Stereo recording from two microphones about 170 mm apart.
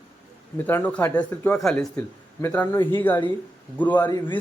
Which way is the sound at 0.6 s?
10° left (ahead or behind).